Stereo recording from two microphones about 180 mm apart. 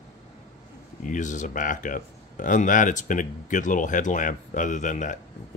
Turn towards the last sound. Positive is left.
turn(degrees=45)  # may be behind; listen again after turning